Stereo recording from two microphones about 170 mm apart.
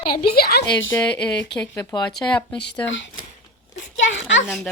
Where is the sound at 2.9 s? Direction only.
90° left.